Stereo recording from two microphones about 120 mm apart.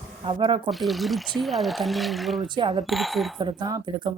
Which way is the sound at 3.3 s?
30° right (ahead or behind).